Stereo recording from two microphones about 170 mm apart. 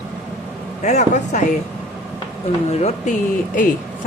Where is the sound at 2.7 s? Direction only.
40° left (ahead or behind).